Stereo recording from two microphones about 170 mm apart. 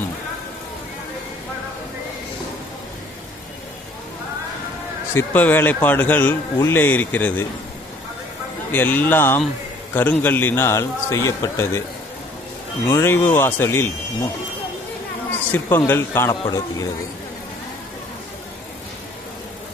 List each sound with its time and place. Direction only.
5.1 s speech: 10° left (ahead or behind)
8.7 s speech: 10° left (ahead or behind)
12.8 s speech: 15° left (ahead or behind)
15.5 s speech: 10° left (ahead or behind)